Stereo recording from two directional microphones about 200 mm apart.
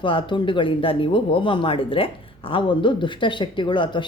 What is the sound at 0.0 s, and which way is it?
Speech, 25° left (ahead or behind).